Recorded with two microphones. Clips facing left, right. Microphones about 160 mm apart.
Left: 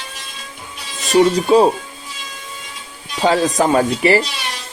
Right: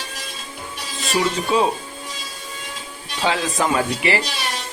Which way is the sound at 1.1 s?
40° left (ahead or behind).